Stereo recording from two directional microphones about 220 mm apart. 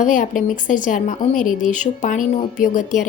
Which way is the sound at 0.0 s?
35° left (ahead or behind).